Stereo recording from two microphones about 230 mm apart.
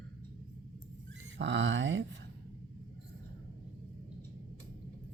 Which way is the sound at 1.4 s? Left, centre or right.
Right.